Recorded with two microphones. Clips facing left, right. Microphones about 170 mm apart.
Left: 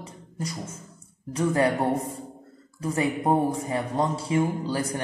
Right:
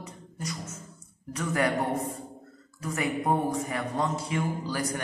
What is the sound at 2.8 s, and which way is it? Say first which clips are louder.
A woman's voice: left 4 dB; 30° left (ahead or behind).